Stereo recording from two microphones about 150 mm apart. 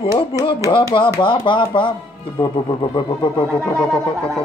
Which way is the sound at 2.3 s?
30° left (ahead or behind).